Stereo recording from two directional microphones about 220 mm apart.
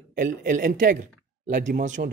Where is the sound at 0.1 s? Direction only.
40° right (ahead or behind).